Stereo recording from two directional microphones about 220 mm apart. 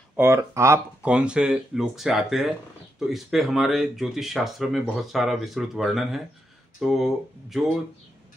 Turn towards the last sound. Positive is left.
turn(degrees=0)  # may be behind; listen again after turning